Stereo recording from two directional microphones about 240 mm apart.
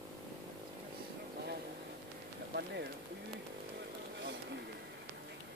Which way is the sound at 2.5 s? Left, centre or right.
Right.